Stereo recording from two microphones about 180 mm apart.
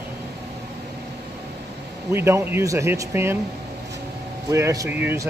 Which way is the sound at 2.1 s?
15° right (ahead or behind).